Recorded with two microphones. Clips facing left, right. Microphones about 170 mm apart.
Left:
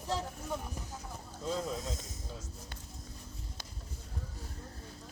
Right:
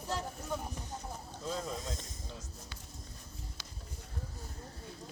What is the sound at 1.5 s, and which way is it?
Speech, centre (ahead or behind).